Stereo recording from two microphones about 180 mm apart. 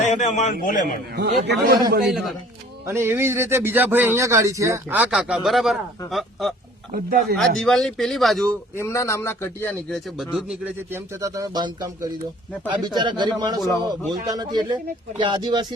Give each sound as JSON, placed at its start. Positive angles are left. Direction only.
{"t": 0.0, "sound": "a man's voice", "side_deg": 40}
{"t": 1.1, "sound": "a man's voice", "side_deg": -65}
{"t": 2.0, "sound": "speech", "side_deg": 0}
{"t": 2.8, "sound": "a man's voice", "side_deg": -15}
{"t": 6.9, "sound": "speech", "side_deg": -55}
{"t": 7.3, "sound": "speech", "side_deg": 0}
{"t": 8.7, "sound": "speech", "side_deg": 15}
{"t": 10.2, "sound": "speech", "side_deg": 0}
{"t": 10.9, "sound": "speech", "side_deg": -15}